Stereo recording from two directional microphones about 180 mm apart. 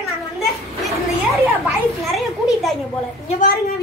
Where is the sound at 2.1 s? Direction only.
Centre (ahead or behind).